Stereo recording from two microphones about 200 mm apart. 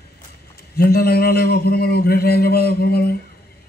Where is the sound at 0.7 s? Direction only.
50° left (ahead or behind).